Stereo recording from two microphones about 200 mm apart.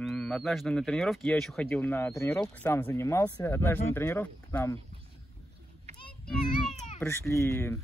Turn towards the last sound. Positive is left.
turn(degrees=15)  # may be behind; listen again after turning